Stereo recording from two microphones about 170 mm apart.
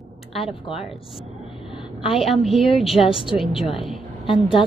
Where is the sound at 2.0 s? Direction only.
35° left (ahead or behind).